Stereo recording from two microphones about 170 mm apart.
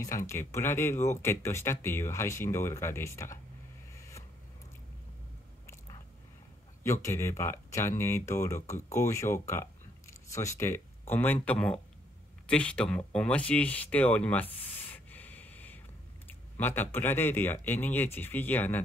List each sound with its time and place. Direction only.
0.0 s speech: 20° left (ahead or behind)
3.9 s vehicle: 20° left (ahead or behind)
6.8 s speech: 15° left (ahead or behind)